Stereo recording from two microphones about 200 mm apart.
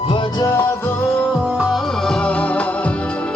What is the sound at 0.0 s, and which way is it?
Music, 25° left (ahead or behind).